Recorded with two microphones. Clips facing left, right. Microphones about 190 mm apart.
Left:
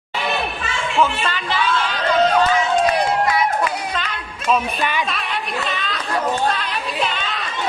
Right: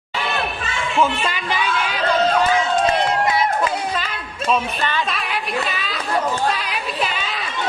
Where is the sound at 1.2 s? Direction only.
10° right (ahead or behind).